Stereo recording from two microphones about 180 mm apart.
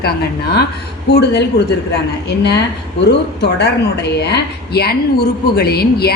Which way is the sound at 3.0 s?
70° left (ahead or behind).